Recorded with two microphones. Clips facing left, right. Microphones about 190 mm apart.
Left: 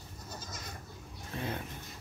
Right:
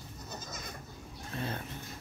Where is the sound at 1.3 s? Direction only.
15° left (ahead or behind).